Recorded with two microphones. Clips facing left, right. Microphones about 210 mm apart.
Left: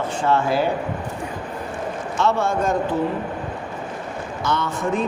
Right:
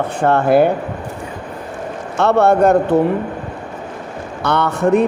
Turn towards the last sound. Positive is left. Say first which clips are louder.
# right 9 dB
turn(degrees=-65)  # may be behind; listen again after turning